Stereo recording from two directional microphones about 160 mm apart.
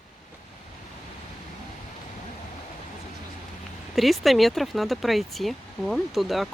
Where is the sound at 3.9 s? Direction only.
Centre (ahead or behind).